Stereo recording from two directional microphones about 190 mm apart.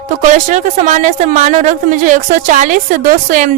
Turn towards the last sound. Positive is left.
turn(degrees=-45)  # may be behind; listen again after turning